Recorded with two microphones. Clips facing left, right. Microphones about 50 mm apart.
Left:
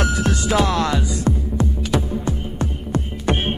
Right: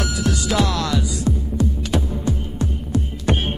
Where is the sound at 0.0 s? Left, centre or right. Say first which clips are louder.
Left 2 dB; left.